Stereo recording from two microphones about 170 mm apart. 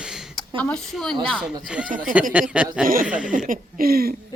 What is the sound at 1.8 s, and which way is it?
Speech, 50° right (ahead or behind).